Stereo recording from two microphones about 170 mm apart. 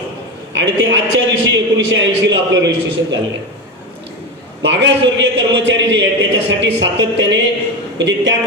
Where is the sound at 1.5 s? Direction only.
90° right.